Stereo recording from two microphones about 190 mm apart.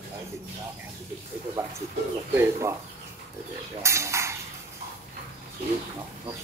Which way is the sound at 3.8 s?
15° right (ahead or behind).